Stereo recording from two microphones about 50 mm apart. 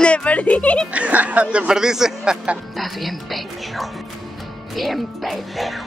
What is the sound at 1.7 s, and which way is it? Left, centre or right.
Speech, centre.